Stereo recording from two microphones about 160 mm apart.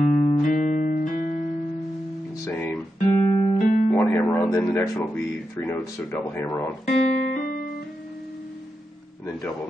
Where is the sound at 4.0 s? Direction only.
10° left (ahead or behind).